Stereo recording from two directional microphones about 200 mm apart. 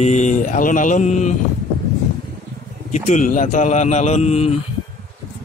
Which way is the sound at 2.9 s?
35° left (ahead or behind).